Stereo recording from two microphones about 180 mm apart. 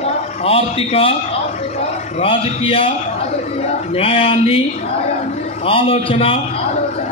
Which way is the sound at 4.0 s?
30° left (ahead or behind).